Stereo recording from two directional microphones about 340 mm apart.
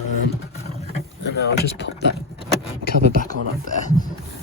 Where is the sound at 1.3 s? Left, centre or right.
Left.